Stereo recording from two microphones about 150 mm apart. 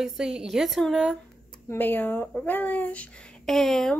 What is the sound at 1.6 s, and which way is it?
Speech, 15° left (ahead or behind).